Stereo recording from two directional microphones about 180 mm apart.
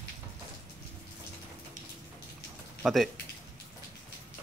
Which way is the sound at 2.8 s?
Centre (ahead or behind).